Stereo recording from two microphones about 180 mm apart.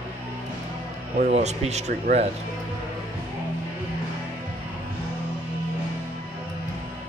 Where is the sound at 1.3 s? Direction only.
40° right (ahead or behind).